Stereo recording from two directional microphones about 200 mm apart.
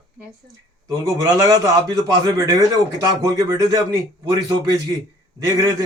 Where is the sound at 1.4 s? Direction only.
15° right (ahead or behind).